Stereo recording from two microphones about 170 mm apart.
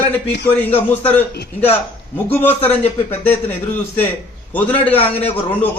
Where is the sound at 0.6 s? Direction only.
10° left (ahead or behind).